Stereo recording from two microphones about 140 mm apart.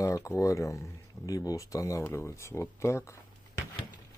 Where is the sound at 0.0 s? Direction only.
20° left (ahead or behind).